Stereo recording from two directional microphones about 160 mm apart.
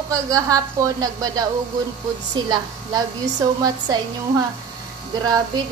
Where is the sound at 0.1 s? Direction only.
20° right (ahead or behind).